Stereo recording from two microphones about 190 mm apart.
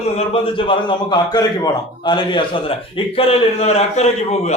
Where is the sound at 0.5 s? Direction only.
25° left (ahead or behind).